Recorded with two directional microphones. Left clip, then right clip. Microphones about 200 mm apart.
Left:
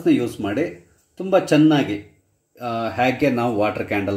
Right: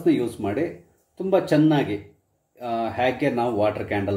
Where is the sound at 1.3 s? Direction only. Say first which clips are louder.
Left 4 dB; 25° left (ahead or behind).